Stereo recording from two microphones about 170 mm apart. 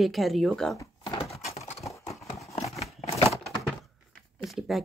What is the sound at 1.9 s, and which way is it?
Clip-clop, 20° left (ahead or behind).